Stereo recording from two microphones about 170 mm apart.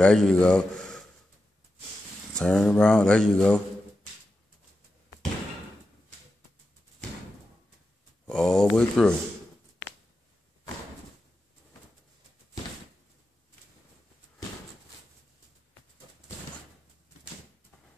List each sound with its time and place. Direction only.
0.0 s speech: 5° left (ahead or behind)
2.3 s speech: 5° left (ahead or behind)
8.3 s a sound: 5° left (ahead or behind)
8.7 s speech: 5° left (ahead or behind)